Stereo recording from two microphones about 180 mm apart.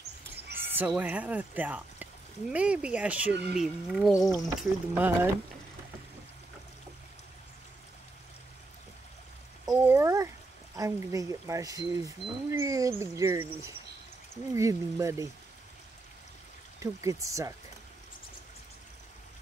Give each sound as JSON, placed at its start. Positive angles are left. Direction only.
{"t": 0.5, "sound": "speech", "side_deg": -10}
{"t": 9.7, "sound": "a sound", "side_deg": -15}
{"t": 10.8, "sound": "speech", "side_deg": -15}
{"t": 16.8, "sound": "speech", "side_deg": -15}